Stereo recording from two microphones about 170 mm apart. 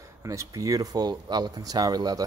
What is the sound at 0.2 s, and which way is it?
Speech, 20° right (ahead or behind).